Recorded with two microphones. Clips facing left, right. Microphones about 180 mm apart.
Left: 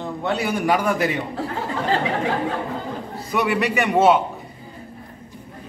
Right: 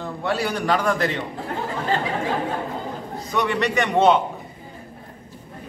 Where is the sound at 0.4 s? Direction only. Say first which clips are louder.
Left 2 dB; 10° left (ahead or behind).